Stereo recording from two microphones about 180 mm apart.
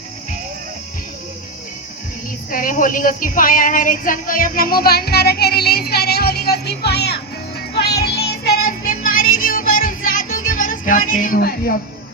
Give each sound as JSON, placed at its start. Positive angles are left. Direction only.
{"t": 2.5, "sound": "a woman's voice", "side_deg": 50}
{"t": 7.8, "sound": "music", "side_deg": 65}